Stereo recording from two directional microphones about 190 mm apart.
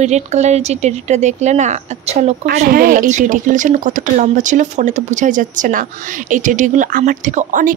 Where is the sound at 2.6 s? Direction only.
50° right (ahead or behind).